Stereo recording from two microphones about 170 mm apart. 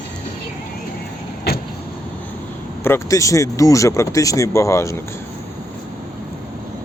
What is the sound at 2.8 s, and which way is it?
Speech, 15° left (ahead or behind).